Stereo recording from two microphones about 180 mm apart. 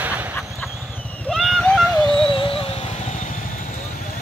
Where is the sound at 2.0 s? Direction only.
30° left (ahead or behind).